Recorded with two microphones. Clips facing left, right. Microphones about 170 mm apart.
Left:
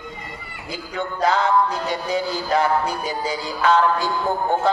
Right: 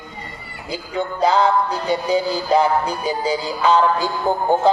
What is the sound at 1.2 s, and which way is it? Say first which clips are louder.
Music: right 2 dB; 30° right (ahead or behind).